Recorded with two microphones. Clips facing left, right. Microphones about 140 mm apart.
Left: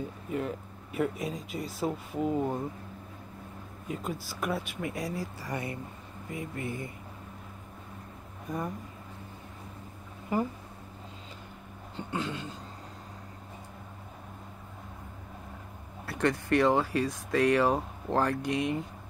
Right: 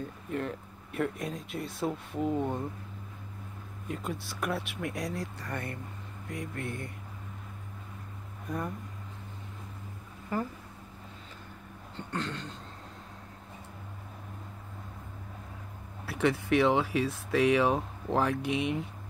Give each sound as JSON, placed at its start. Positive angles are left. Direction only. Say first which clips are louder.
{"t": 0.3, "sound": "speech", "louder": "left 1 dB", "side_deg": 5}
{"t": 3.8, "sound": "speech", "louder": "left 1 dB", "side_deg": 0}
{"t": 8.5, "sound": "speech", "louder": "left 1 dB", "side_deg": 0}
{"t": 10.3, "sound": "speech", "louder": "left 3 dB", "side_deg": 15}
{"t": 12.0, "sound": "speech", "louder": "left 2 dB", "side_deg": 10}
{"t": 16.1, "sound": "speech", "louder": "even", "side_deg": -5}